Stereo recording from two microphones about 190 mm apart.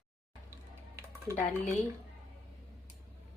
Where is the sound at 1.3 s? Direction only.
15° right (ahead or behind).